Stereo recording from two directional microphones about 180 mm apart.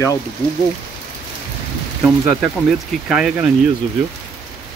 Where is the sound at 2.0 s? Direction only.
5° right (ahead or behind).